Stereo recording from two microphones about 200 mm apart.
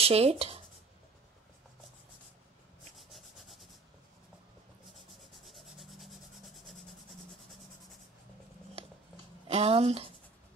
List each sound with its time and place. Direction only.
0.0 s speech: 30° right (ahead or behind)
3.0 s rub: centre (ahead or behind)
5.5 s rub: centre (ahead or behind)
9.5 s speech: 30° right (ahead or behind)